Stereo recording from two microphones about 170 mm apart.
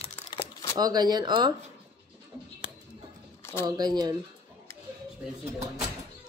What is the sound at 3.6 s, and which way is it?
Speech, 25° right (ahead or behind).